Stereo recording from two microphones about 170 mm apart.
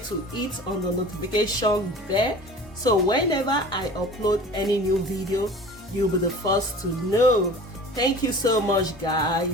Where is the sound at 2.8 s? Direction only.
25° left (ahead or behind).